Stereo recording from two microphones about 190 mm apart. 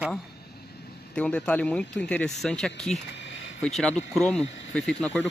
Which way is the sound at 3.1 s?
70° left (ahead or behind).